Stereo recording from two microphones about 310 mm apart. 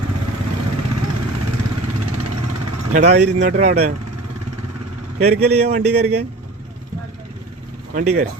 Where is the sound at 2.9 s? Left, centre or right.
Right.